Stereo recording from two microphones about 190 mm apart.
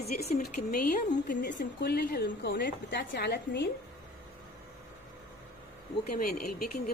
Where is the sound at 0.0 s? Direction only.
55° left (ahead or behind).